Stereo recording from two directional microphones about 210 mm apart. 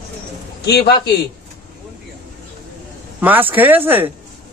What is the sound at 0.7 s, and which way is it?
Speech, 50° left (ahead or behind).